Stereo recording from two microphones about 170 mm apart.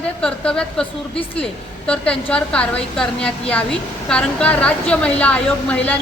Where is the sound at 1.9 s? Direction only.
5° left (ahead or behind).